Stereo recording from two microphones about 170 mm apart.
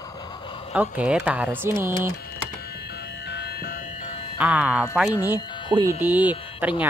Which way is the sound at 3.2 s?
70° left (ahead or behind).